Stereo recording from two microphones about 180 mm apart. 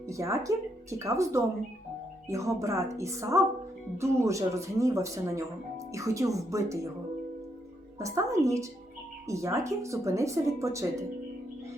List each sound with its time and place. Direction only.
0.1 s speech: 15° right (ahead or behind)
7.9 s speech: 15° right (ahead or behind)